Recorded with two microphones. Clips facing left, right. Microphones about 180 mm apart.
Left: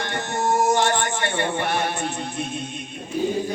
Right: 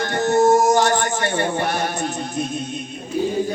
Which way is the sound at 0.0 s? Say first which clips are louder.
Right 9 dB; 40° right (ahead or behind).